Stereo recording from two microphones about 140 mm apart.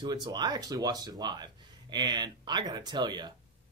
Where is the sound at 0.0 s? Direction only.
30° right (ahead or behind).